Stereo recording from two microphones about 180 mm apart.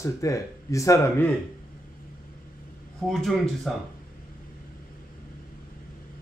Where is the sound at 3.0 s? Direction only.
Centre (ahead or behind).